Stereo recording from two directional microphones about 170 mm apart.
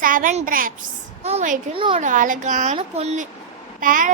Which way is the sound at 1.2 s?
40° right (ahead or behind).